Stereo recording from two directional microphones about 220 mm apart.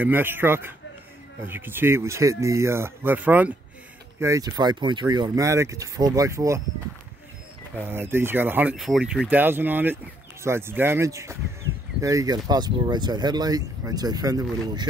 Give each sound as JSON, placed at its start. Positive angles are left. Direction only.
{"t": 0.0, "sound": "speech", "side_deg": -10}
{"t": 7.7, "sound": "speech", "side_deg": -10}